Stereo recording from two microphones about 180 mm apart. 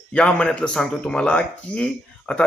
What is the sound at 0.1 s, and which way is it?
A man's voice, 5° left (ahead or behind).